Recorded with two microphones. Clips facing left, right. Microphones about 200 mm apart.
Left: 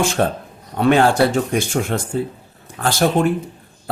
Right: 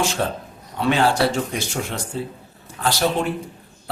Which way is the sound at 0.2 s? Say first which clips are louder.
Left 5 dB; 55° left (ahead or behind).